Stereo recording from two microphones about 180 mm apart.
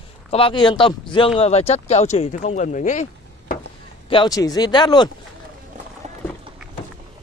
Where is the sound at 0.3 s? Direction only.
30° left (ahead or behind).